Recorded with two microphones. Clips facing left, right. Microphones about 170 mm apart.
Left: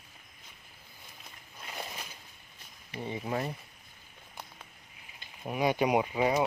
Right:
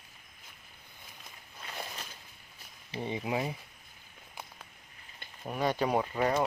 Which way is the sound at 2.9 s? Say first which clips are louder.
Right 1 dB; 20° right (ahead or behind).